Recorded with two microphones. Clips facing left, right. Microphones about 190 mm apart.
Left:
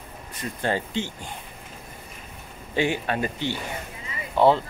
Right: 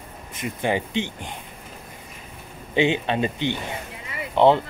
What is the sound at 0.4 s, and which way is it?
Speech, 15° right (ahead or behind).